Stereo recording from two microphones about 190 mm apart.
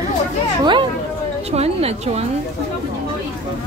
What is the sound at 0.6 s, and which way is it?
Speech, 25° right (ahead or behind).